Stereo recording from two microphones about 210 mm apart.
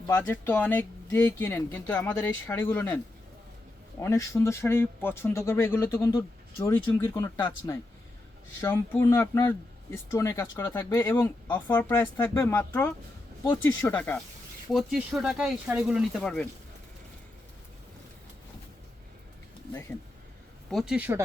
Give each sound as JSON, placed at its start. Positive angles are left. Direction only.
{"t": 0.1, "sound": "speech", "side_deg": 10}
{"t": 4.0, "sound": "speech", "side_deg": 15}
{"t": 14.7, "sound": "speech", "side_deg": 0}
{"t": 20.7, "sound": "speech", "side_deg": 0}